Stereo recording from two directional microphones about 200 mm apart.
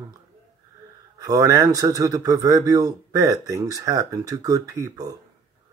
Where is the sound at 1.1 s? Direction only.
15° right (ahead or behind).